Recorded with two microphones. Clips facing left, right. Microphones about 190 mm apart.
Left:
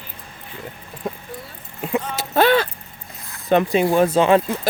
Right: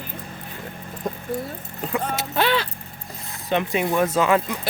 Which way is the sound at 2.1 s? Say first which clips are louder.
Left 7 dB; 40° left (ahead or behind).